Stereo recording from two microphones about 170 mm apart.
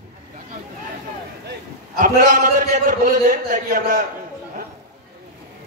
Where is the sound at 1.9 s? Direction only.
55° right (ahead or behind).